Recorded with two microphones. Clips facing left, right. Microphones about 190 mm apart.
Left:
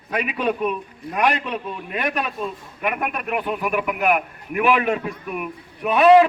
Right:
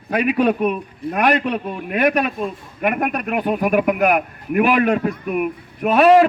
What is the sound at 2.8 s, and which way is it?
A man's voice, 45° right (ahead or behind).